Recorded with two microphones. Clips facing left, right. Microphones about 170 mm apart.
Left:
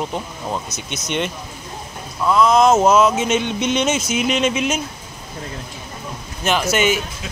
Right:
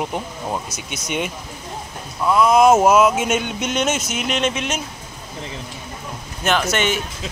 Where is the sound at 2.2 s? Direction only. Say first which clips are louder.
Even; 10° right (ahead or behind).